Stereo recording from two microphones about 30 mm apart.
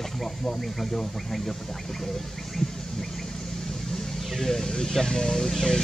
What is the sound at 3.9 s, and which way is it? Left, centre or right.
Vehicle, centre.